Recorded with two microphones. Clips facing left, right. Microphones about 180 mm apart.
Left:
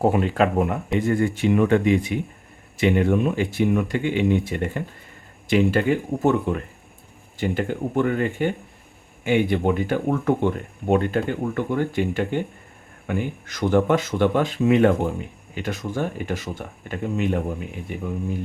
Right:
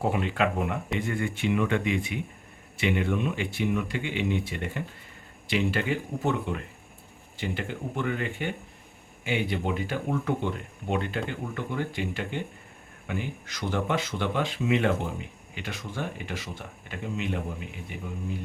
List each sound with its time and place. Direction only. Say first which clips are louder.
0.0 s speech: left 7 dB; 40° left (ahead or behind)